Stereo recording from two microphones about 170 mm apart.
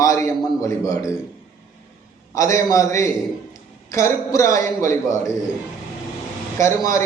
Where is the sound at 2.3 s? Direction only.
20° left (ahead or behind).